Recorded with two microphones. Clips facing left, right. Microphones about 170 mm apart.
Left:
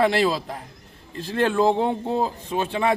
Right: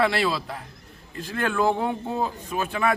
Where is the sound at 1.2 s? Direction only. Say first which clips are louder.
Left 4 dB; 30° left (ahead or behind).